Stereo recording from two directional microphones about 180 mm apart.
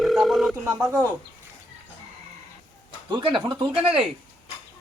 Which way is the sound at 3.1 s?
25° right (ahead or behind).